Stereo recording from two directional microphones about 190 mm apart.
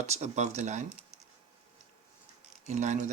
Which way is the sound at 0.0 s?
35° right (ahead or behind).